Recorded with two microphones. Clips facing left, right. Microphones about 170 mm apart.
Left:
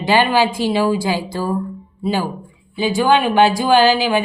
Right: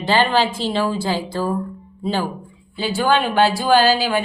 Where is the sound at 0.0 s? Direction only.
15° left (ahead or behind).